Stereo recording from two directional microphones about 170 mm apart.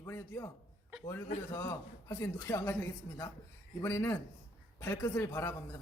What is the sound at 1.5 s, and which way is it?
Speech, 20° left (ahead or behind).